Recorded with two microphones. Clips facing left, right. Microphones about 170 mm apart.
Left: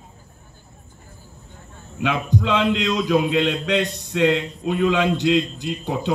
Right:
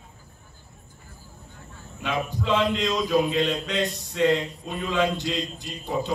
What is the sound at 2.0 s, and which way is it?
Speech, 75° left (ahead or behind).